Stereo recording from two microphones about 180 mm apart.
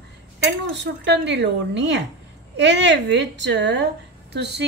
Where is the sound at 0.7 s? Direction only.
75° right (ahead or behind).